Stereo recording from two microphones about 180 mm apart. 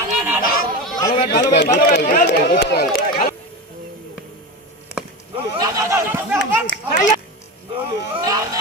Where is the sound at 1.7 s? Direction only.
50° left (ahead or behind).